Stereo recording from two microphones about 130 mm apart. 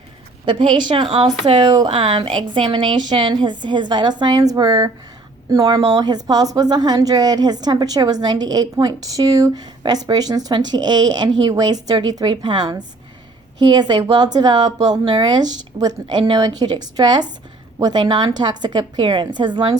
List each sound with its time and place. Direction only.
0.4 s a woman's voice: 35° right (ahead or behind)
1.9 s a woman's voice: 45° right (ahead or behind)